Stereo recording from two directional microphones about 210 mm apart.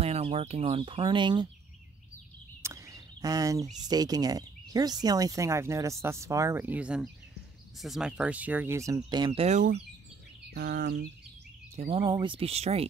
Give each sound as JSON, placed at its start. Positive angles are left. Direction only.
{"t": 0.0, "sound": "speech", "side_deg": -30}
{"t": 2.6, "sound": "a sound", "side_deg": -15}
{"t": 3.8, "sound": "speech", "side_deg": -20}
{"t": 10.5, "sound": "speech", "side_deg": -50}
{"t": 11.7, "sound": "speech", "side_deg": -30}